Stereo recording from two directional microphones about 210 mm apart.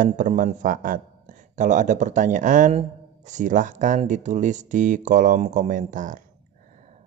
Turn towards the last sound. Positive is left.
turn(degrees=-35)  # may be behind; listen again after turning